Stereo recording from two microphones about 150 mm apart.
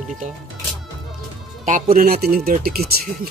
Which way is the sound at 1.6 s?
55° right (ahead or behind).